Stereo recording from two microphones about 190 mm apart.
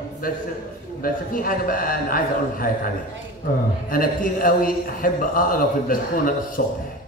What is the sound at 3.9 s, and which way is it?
A man's voice, 50° left (ahead or behind).